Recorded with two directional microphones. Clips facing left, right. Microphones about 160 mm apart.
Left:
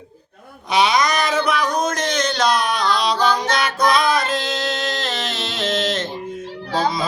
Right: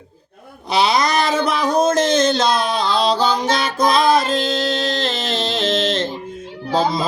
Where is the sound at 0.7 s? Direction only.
30° right (ahead or behind).